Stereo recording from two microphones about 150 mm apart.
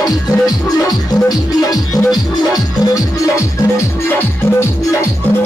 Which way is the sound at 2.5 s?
20° left (ahead or behind).